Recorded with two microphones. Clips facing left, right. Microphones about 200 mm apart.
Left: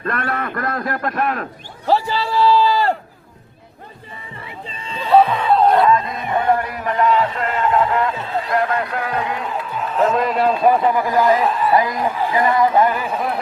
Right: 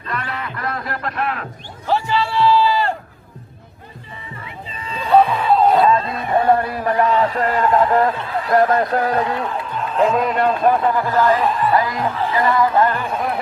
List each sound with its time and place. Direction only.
0.0 s speech: 55° left (ahead or behind)
1.9 s a sound: 35° left (ahead or behind)
4.8 s a sound: 30° left (ahead or behind)
5.0 s snicker: centre (ahead or behind)
5.8 s a sound: 25° right (ahead or behind)
8.5 s speech: 40° right (ahead or behind)
10.1 s speech: centre (ahead or behind)
11.3 s a man's voice: centre (ahead or behind)
11.7 s speech: 20° left (ahead or behind); by 13.4 s centre (ahead or behind)